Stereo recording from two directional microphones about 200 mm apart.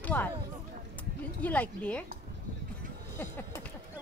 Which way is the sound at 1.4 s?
5° left (ahead or behind).